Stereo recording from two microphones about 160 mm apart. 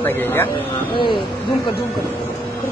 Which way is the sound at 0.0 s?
15° left (ahead or behind).